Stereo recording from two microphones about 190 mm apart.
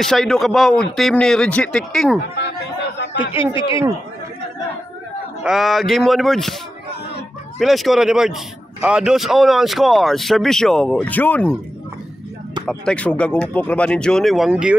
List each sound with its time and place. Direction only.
0.0 s a man's voice: centre (ahead or behind)
3.3 s speech: 25° left (ahead or behind)
5.4 s a man's voice: centre (ahead or behind)
7.5 s a man's voice: centre (ahead or behind)
12.6 s a man's voice: 5° left (ahead or behind)